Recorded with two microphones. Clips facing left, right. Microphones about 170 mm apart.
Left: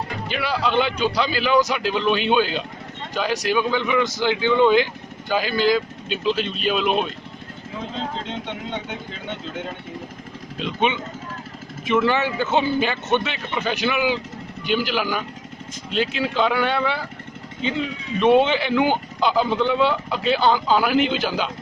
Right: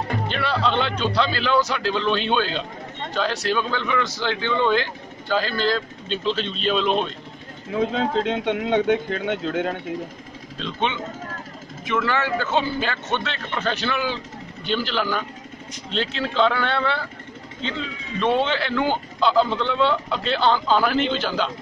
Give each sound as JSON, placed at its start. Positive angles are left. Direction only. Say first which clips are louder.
{"t": 0.3, "sound": "speech", "louder": "left 2 dB", "side_deg": 10}
{"t": 7.8, "sound": "speech", "louder": "right 8 dB", "side_deg": -60}
{"t": 10.6, "sound": "speech", "louder": "left 3 dB", "side_deg": 15}